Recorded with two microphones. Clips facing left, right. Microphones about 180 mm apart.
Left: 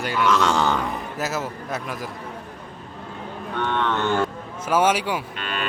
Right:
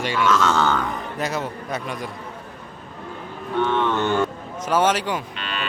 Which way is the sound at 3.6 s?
15° right (ahead or behind).